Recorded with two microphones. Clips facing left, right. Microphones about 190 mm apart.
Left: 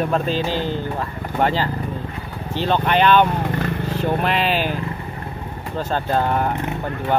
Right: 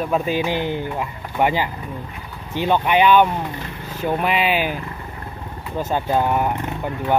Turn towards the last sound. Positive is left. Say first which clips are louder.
# right 1 dB
turn(degrees=-10)  # may be behind; listen again after turning